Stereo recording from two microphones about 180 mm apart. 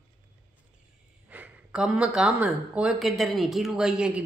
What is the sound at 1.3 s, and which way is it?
Speech, 10° right (ahead or behind).